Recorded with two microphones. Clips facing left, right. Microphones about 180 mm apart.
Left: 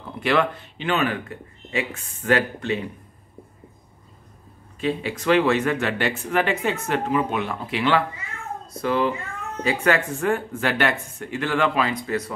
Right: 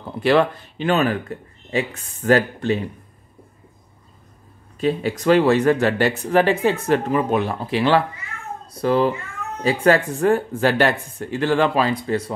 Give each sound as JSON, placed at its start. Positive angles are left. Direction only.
{"t": 0.0, "sound": "speech", "side_deg": -35}
{"t": 4.7, "sound": "speech", "side_deg": -40}